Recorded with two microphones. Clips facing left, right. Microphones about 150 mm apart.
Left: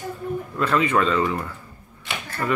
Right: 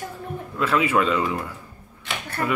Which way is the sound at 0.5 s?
5° right (ahead or behind).